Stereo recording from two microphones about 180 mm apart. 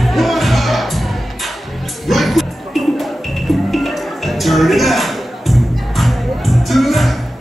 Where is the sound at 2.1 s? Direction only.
Centre (ahead or behind).